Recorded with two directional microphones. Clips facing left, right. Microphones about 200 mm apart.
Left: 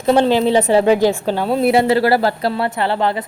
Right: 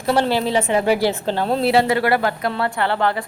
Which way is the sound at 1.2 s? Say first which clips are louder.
Left 2 dB; 10° left (ahead or behind).